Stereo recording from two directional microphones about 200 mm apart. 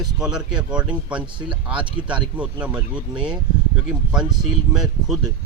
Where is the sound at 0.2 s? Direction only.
5° right (ahead or behind).